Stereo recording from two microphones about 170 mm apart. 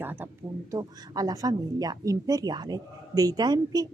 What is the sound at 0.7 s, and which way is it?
A woman's voice, 20° right (ahead or behind).